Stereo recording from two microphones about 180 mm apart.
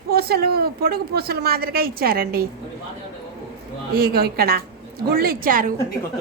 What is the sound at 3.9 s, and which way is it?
A woman's voice, 60° right (ahead or behind).